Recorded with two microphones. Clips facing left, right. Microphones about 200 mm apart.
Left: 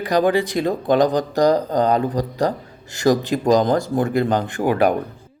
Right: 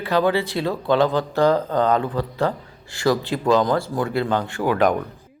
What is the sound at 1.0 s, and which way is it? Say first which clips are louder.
A man's voice: left 2 dB; 40° left (ahead or behind).